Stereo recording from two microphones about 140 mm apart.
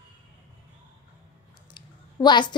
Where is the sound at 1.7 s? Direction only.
30° left (ahead or behind).